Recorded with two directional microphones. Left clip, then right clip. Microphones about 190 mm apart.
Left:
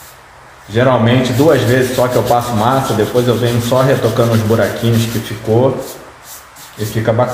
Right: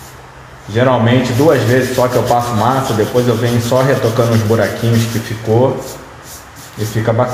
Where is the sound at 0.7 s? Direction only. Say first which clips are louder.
Even; centre (ahead or behind).